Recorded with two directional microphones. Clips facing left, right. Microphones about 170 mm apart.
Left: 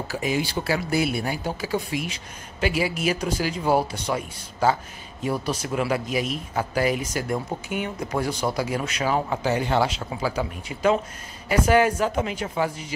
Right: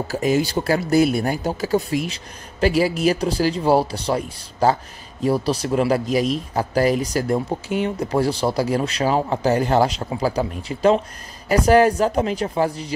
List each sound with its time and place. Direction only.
0.1 s speech: 45° right (ahead or behind)